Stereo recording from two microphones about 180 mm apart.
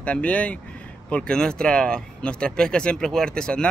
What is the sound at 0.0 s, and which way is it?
Speech, 5° left (ahead or behind).